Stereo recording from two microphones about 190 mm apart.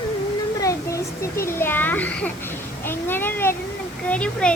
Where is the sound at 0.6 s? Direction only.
15° left (ahead or behind).